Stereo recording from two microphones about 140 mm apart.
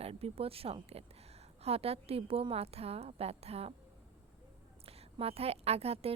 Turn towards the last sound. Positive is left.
turn(degrees=-45)  # may be behind; listen again after turning